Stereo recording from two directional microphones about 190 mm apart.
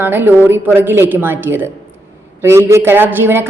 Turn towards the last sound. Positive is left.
turn(degrees=-10)  # may be behind; listen again after turning